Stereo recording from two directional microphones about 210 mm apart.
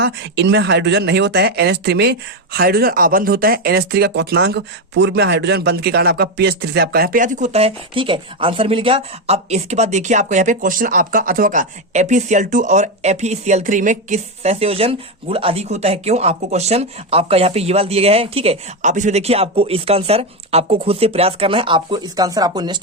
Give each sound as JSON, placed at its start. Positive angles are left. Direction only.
{"t": 0.0, "sound": "speech", "side_deg": -55}